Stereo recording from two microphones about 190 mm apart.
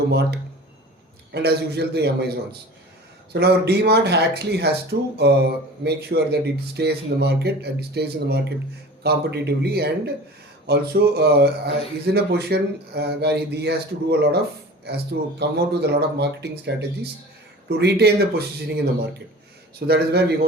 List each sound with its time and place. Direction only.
0.1 s speech: 60° right (ahead or behind)
19.9 s speech: 60° right (ahead or behind)